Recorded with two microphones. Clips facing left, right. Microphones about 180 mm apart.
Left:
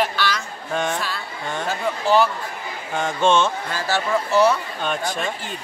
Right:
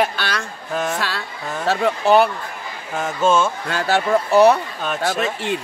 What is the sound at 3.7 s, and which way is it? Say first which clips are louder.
Speech: right 4 dB; 65° right (ahead or behind).